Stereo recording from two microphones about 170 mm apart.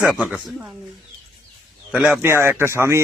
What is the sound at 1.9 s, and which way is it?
A man's voice, 5° right (ahead or behind).